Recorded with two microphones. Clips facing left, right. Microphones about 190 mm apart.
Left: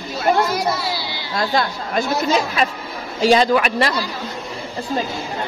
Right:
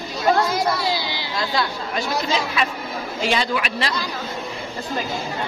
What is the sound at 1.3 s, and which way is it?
Speech, 50° left (ahead or behind).